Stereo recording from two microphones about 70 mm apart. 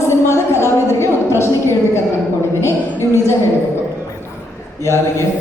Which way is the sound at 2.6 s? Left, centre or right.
Left.